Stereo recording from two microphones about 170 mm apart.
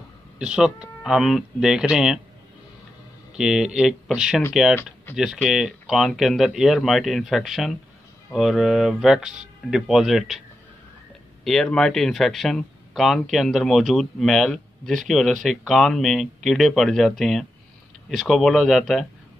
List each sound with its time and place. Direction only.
0.4 s speech: 5° right (ahead or behind)
3.3 s speech: 5° right (ahead or behind)
11.4 s speech: 5° left (ahead or behind)